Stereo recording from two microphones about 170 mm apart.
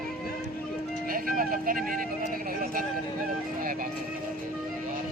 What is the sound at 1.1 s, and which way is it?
Vehicle, 55° right (ahead or behind).